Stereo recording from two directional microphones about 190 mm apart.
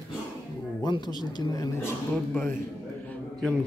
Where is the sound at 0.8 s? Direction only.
25° left (ahead or behind).